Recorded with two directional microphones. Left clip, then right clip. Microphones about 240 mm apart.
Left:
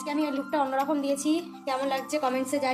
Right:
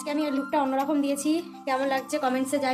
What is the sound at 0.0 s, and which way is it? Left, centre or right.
A woman's voice, centre.